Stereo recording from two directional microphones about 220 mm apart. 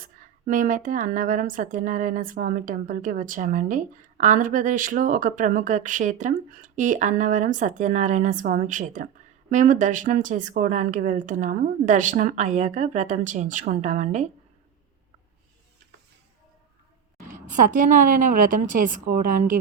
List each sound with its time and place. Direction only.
0.0 s a woman's voice: 35° right (ahead or behind)
17.6 s a woman's voice: 35° right (ahead or behind)